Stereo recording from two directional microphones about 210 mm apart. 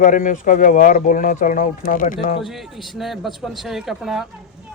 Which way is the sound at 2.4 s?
Centre (ahead or behind).